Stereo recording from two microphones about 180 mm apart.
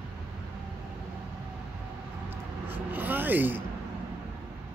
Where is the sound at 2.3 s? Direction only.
10° right (ahead or behind).